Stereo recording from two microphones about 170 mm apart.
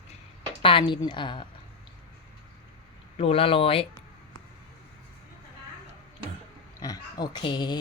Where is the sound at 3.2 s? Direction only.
35° left (ahead or behind).